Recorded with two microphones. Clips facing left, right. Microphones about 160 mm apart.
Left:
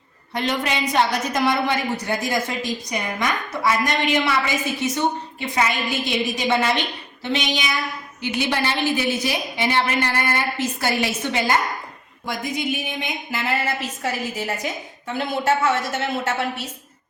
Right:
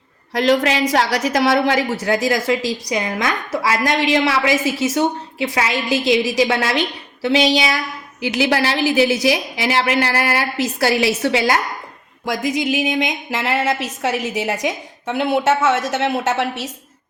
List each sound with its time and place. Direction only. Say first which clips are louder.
0.3 s a woman's voice: right 8 dB; 90° right